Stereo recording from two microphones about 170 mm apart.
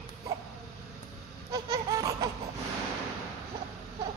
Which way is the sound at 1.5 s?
20° right (ahead or behind).